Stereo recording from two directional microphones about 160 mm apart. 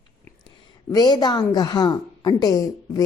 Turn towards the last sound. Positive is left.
turn(degrees=25)  # may be behind; listen again after turning